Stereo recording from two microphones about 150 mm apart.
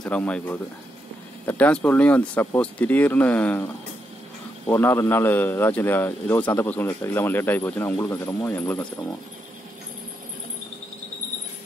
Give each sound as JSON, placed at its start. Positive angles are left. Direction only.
{"t": 0.0, "sound": "a man's voice", "side_deg": 10}
{"t": 4.6, "sound": "a man's voice", "side_deg": 15}